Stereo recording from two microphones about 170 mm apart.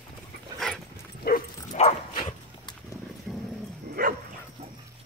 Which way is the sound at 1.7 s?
35° left (ahead or behind).